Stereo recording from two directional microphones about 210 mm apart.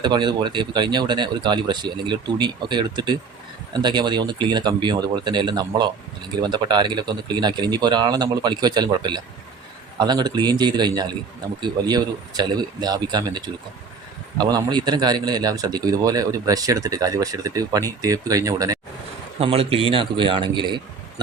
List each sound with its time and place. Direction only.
0.0 s a man's voice: 20° right (ahead or behind)
19.4 s speech: 30° right (ahead or behind)